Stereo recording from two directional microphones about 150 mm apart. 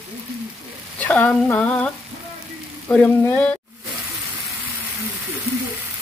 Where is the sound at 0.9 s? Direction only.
10° left (ahead or behind).